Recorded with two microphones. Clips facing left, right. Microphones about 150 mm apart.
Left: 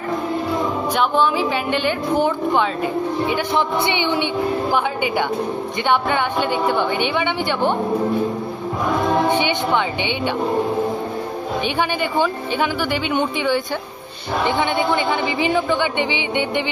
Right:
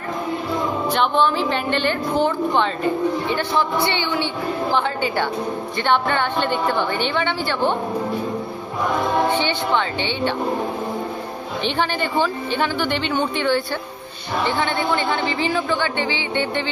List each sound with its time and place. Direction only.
0.9 s a woman's voice: 10° left (ahead or behind)
9.3 s a woman's voice: 15° left (ahead or behind)
11.6 s a woman's voice: 10° left (ahead or behind)